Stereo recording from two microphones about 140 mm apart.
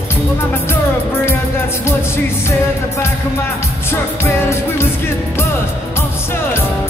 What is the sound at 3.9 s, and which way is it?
Music, 20° left (ahead or behind).